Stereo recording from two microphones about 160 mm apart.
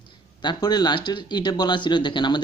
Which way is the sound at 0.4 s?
25° left (ahead or behind).